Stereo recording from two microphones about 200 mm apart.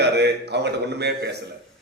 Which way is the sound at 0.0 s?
55° right (ahead or behind).